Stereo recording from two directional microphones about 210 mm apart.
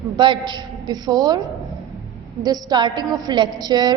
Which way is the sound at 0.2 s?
20° right (ahead or behind).